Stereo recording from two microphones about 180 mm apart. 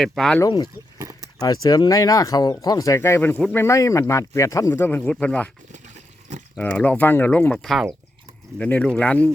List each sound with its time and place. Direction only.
0.0 s speech: centre (ahead or behind)
0.4 s speech: 25° left (ahead or behind); by 5.5 s 10° left (ahead or behind)
6.6 s speech: 5° left (ahead or behind)